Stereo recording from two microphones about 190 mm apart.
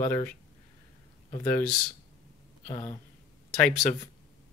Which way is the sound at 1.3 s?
10° left (ahead or behind).